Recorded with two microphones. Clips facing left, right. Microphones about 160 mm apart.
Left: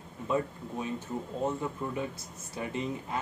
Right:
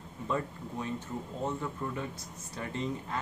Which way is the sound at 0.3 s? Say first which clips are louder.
Left 3 dB; 15° left (ahead or behind).